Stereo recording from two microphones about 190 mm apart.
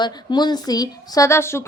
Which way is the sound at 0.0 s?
20° left (ahead or behind).